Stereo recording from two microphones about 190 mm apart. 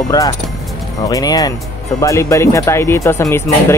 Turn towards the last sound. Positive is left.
turn(degrees=15)  # may be behind; listen again after turning